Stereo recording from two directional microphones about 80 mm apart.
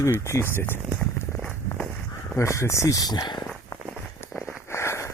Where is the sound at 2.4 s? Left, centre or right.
Left.